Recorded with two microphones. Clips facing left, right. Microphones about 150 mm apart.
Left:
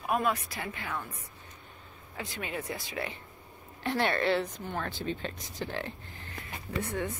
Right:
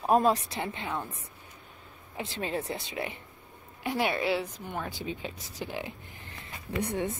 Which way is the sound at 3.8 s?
10° right (ahead or behind).